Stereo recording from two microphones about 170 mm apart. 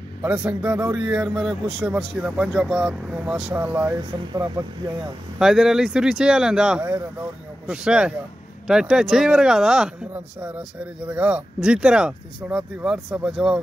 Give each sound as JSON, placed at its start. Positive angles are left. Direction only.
{"t": 0.2, "sound": "a man's voice", "side_deg": -5}
{"t": 5.4, "sound": "speech", "side_deg": 0}